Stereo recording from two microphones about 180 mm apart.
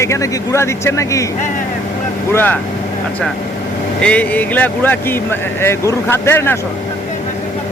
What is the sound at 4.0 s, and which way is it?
Speech, 10° left (ahead or behind).